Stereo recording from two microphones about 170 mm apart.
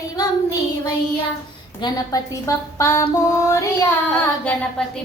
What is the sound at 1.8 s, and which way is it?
A woman's voice, 20° left (ahead or behind).